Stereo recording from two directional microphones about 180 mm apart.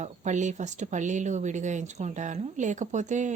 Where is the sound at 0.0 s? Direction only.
40° right (ahead or behind).